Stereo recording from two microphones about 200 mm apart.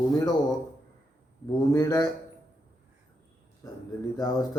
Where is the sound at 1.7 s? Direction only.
20° left (ahead or behind).